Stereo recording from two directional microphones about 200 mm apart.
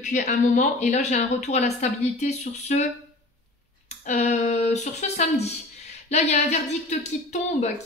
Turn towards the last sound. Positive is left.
turn(degrees=35)  # may be behind; listen again after turning